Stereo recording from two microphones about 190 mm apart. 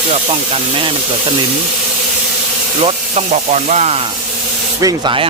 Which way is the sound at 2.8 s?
35° right (ahead or behind).